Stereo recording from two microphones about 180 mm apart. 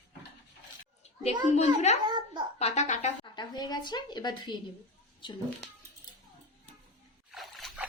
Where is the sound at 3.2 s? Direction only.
25° left (ahead or behind).